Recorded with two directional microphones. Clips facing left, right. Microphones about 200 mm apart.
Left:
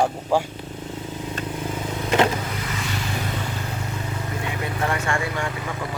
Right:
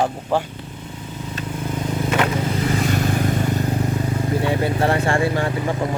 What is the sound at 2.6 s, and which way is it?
Vehicle, 40° right (ahead or behind).